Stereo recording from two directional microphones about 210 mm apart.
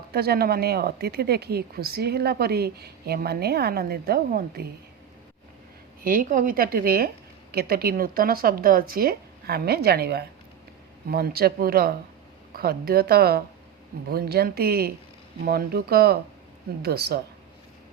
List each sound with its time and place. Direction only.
0.1 s speech: 45° right (ahead or behind)
6.0 s speech: 45° right (ahead or behind)